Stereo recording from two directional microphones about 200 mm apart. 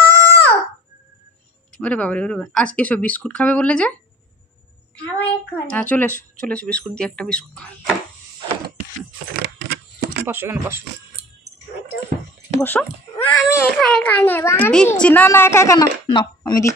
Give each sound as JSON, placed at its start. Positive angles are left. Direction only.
{"t": 0.0, "sound": "a sound", "side_deg": 10}
{"t": 1.8, "sound": "a child's voice", "side_deg": 5}
{"t": 5.0, "sound": "a child's voice", "side_deg": 5}
{"t": 9.3, "sound": "keys jangling", "side_deg": -55}
{"t": 10.2, "sound": "speech", "side_deg": -10}
{"t": 12.5, "sound": "a child's voice", "side_deg": 10}